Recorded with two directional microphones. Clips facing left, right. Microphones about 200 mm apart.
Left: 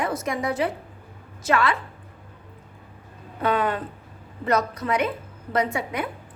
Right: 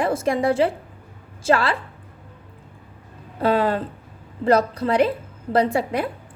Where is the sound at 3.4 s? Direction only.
30° right (ahead or behind).